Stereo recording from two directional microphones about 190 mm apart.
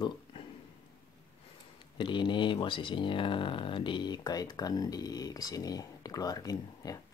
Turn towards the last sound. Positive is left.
turn(degrees=20)  # may be behind; listen again after turning